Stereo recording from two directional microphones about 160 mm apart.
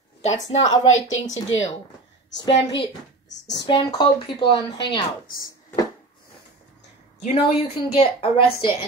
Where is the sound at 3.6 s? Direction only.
30° left (ahead or behind).